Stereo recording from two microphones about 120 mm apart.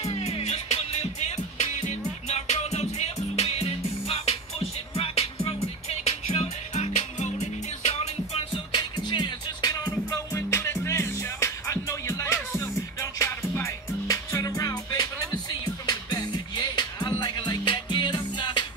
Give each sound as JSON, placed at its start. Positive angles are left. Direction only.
{"t": 0.0, "sound": "music", "side_deg": 60}
{"t": 8.7, "sound": "music", "side_deg": 35}